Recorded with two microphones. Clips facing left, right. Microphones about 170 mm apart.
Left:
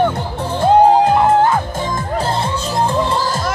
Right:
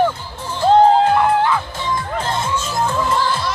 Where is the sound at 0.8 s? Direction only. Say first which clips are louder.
Left 2 dB; 20° left (ahead or behind).